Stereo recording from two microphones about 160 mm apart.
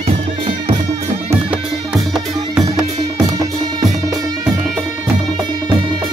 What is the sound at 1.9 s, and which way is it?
Music, 5° right (ahead or behind).